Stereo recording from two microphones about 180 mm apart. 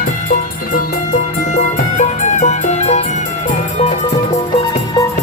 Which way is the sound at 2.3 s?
40° left (ahead or behind).